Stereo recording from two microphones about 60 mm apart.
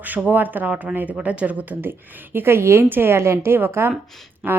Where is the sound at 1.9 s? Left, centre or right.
Right.